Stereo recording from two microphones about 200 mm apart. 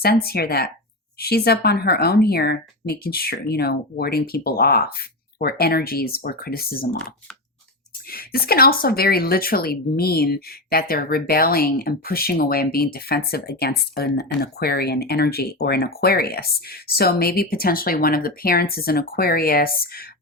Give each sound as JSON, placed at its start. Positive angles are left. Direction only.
{"t": 0.0, "sound": "speech", "side_deg": 50}
{"t": 8.1, "sound": "speech", "side_deg": 50}